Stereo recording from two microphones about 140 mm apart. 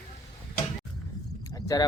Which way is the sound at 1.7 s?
25° left (ahead or behind).